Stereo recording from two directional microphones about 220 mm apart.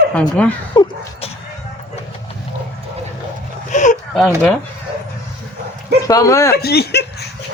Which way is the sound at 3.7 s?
35° left (ahead or behind).